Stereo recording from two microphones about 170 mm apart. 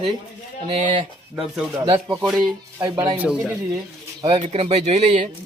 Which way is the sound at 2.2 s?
Centre (ahead or behind).